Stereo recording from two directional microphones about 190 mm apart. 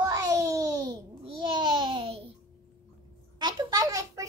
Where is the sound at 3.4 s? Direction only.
20° right (ahead or behind).